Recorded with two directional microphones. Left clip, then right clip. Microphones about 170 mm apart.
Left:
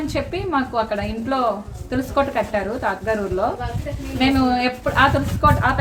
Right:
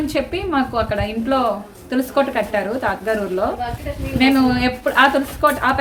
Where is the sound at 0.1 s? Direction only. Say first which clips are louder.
Right 2 dB; 15° right (ahead or behind).